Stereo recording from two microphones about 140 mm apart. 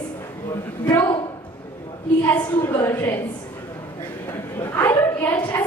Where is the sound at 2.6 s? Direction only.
20° left (ahead or behind).